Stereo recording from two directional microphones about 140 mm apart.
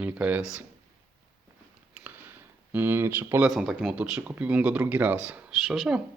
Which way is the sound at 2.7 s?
15° right (ahead or behind).